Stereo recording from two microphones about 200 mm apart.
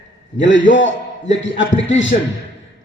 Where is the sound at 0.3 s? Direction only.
65° left (ahead or behind).